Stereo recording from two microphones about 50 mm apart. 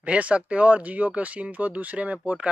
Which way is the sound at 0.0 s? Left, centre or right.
Right.